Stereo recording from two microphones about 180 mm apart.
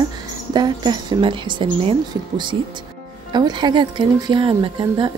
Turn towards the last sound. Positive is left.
turn(degrees=-25)  # may be behind; listen again after turning